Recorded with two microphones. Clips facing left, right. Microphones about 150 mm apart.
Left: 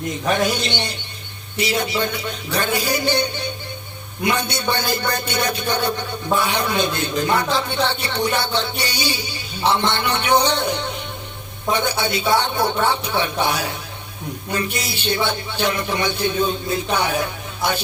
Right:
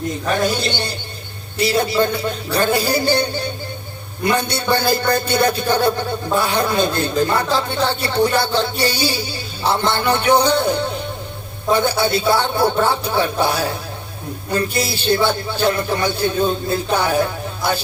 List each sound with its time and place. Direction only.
0.4 s a man's voice: 35° right (ahead or behind)